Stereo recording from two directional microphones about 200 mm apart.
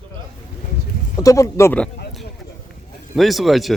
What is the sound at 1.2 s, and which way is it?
Speech, 15° left (ahead or behind).